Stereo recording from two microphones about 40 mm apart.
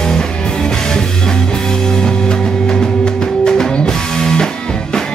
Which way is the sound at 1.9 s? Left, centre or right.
Centre.